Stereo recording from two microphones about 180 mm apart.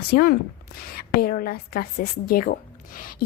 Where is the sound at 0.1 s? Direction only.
55° left (ahead or behind).